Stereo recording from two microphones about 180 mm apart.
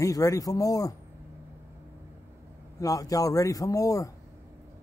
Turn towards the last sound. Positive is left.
turn(degrees=20)  # may be behind; listen again after turning